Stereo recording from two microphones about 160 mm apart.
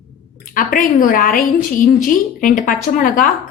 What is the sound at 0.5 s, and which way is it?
Speech, 60° left (ahead or behind).